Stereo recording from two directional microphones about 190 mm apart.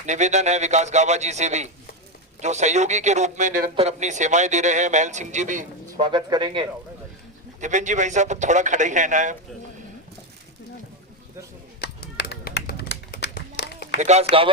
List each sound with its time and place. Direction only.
0.0 s a man's voice: 40° right (ahead or behind)
6.0 s speech: 25° right (ahead or behind)
7.6 s a man's voice: 40° right (ahead or behind)
11.8 s a sound: 60° left (ahead or behind)
14.0 s a man's voice: 35° right (ahead or behind)